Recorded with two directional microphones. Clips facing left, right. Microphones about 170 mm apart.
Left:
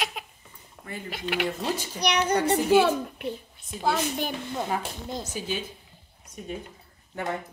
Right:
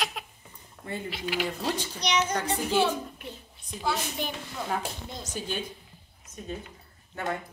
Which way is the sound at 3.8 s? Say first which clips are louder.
Left 4 dB; 50° left (ahead or behind).